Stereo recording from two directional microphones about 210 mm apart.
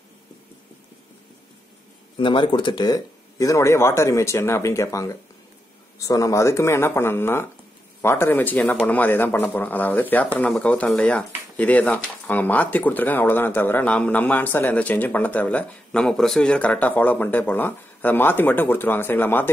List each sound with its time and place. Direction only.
2.1 s speech: 25° left (ahead or behind)